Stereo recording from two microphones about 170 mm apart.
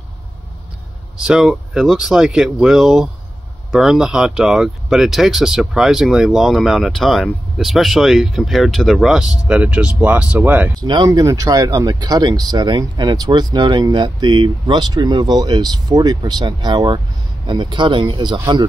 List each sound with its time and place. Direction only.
1.2 s speech: 5° right (ahead or behind)
10.8 s speech: 25° right (ahead or behind)